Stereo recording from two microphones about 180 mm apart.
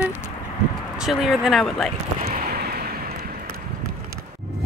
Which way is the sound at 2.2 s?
55° right (ahead or behind).